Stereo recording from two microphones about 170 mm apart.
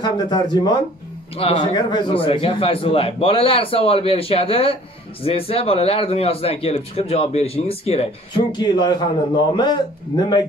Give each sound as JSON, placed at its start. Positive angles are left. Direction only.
{"t": 0.0, "sound": "speech", "side_deg": 25}